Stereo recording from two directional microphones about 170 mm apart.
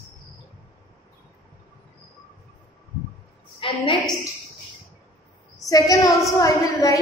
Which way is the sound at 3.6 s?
30° left (ahead or behind).